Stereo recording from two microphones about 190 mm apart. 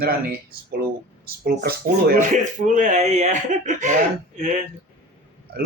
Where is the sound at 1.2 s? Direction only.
55° right (ahead or behind); by 4.5 s 40° right (ahead or behind).